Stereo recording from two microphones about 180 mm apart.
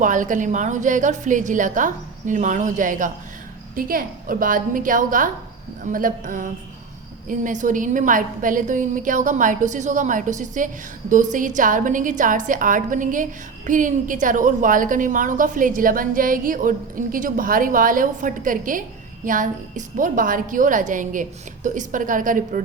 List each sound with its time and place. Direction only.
0.0 s a woman's voice: 45° right (ahead or behind)